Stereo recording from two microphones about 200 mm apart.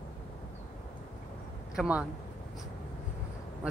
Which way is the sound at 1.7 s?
5° right (ahead or behind).